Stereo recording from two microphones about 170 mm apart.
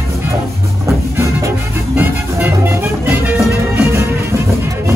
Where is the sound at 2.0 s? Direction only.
10° right (ahead or behind).